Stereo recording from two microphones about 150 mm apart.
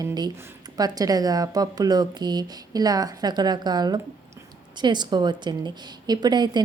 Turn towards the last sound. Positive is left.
turn(degrees=-30)  # may be behind; listen again after turning